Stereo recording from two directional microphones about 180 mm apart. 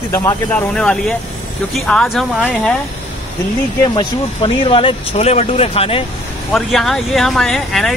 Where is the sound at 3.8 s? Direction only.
25° left (ahead or behind).